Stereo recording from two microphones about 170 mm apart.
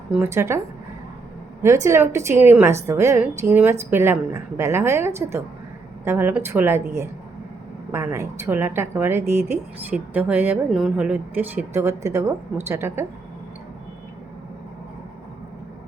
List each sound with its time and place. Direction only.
0.1 s a woman's voice: 15° right (ahead or behind)
1.6 s a woman's voice: 15° right (ahead or behind)